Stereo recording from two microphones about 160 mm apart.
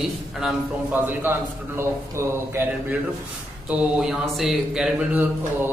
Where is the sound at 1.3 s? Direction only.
15° right (ahead or behind).